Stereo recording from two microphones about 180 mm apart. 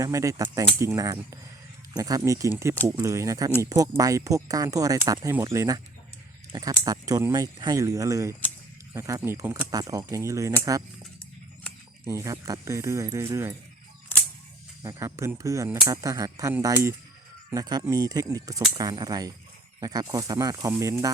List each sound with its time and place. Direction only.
0.0 s speech: 15° right (ahead or behind)
12.0 s speech: 15° right (ahead or behind)
14.8 s speech: 15° right (ahead or behind)